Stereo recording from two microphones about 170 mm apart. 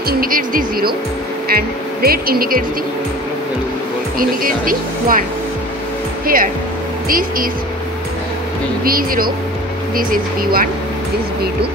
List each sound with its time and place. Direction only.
0.1 s music: 55° right (ahead or behind)
1.5 s speech: 60° right (ahead or behind)
4.2 s speech: 55° right (ahead or behind)
6.2 s speech: 55° right (ahead or behind)
8.8 s speech: 60° right (ahead or behind)